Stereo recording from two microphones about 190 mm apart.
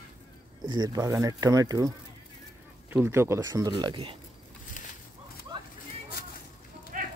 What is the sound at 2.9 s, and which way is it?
Speech, 15° right (ahead or behind).